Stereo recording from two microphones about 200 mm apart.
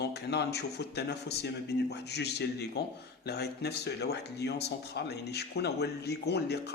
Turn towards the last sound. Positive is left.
turn(degrees=55)  # may be behind; listen again after turning